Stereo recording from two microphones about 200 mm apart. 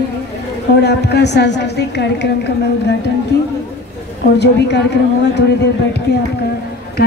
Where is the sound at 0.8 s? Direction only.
55° left (ahead or behind).